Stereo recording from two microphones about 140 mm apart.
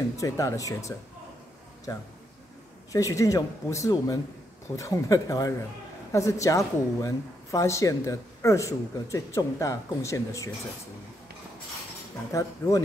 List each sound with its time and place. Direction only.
0.2 s speech: 20° left (ahead or behind)
12.3 s speech: 25° left (ahead or behind)